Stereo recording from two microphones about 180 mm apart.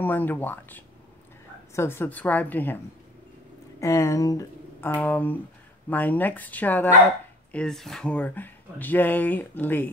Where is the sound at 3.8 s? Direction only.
15° left (ahead or behind).